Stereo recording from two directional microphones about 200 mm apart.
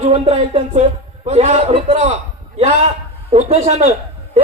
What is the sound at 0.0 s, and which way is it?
A man's voice, 30° right (ahead or behind).